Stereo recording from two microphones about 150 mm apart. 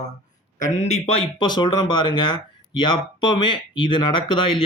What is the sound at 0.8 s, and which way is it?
Speech, 45° left (ahead or behind).